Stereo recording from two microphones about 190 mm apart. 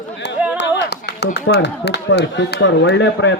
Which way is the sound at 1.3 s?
65° left (ahead or behind).